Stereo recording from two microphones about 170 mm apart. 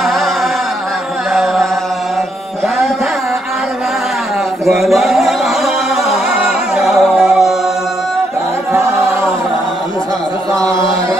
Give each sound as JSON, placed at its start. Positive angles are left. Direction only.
{"t": 0.0, "sound": "chant", "side_deg": 0}
{"t": 1.3, "sound": "chant", "side_deg": 0}
{"t": 4.6, "sound": "chant", "side_deg": 0}
{"t": 6.0, "sound": "music", "side_deg": 0}
{"t": 10.5, "sound": "a sound", "side_deg": -20}